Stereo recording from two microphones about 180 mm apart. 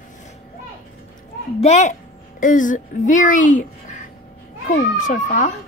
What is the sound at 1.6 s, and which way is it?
A woman's voice, 40° left (ahead or behind).